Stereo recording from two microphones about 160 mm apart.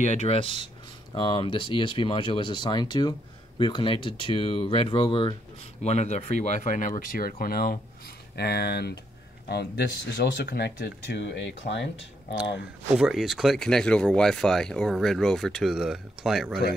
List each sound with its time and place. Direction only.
0.0 s speech: 45° left (ahead or behind)
5.8 s speech: 45° left (ahead or behind); by 7.8 s 70° left (ahead or behind)
8.4 s speech: 90° left
12.9 s speech: 5° right (ahead or behind)